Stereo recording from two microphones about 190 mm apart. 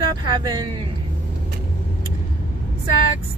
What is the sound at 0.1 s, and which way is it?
Speech, 20° right (ahead or behind).